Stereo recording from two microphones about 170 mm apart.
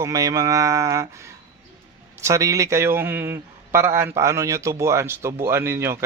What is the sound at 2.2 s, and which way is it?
Speech, 20° right (ahead or behind).